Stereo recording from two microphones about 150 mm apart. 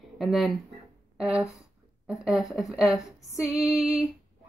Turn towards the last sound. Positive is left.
turn(degrees=-5)  # may be behind; listen again after turning